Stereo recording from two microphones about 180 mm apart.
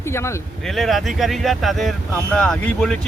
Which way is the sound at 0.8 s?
Centre (ahead or behind).